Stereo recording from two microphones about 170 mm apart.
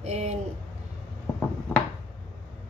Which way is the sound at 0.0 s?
40° right (ahead or behind).